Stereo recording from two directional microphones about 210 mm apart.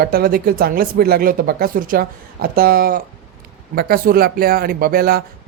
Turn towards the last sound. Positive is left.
turn(degrees=-45)  # may be behind; listen again after turning